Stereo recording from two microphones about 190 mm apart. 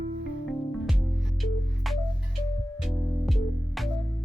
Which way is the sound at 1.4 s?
Centre (ahead or behind).